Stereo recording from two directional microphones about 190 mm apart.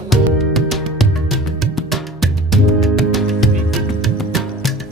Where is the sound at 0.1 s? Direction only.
Centre (ahead or behind).